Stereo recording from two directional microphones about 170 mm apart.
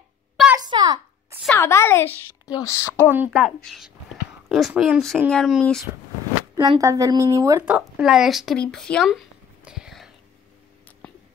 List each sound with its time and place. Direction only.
0.6 s a sound: 25° right (ahead or behind)
1.6 s a child's voice: 15° left (ahead or behind)
3.1 s a woman's voice: 10° right (ahead or behind)
6.5 s a woman's voice: 20° right (ahead or behind)
7.6 s speech: 5° right (ahead or behind)
9.7 s whispering: 5° right (ahead or behind)